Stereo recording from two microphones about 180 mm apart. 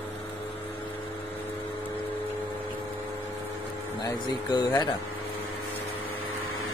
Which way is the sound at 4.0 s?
20° left (ahead or behind).